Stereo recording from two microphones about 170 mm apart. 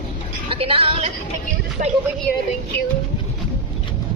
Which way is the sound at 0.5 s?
35° right (ahead or behind).